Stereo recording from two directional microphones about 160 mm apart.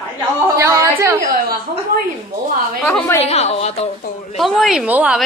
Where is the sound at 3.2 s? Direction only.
40° left (ahead or behind).